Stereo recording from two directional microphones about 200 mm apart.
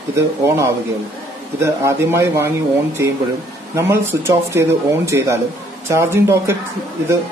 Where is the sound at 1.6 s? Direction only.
15° right (ahead or behind).